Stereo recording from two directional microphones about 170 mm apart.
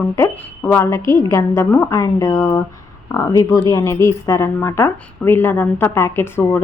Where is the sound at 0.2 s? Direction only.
15° left (ahead or behind).